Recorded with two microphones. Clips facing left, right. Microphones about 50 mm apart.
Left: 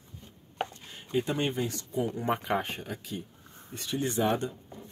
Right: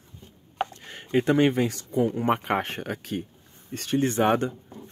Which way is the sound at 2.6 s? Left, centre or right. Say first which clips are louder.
Right 5 dB; right.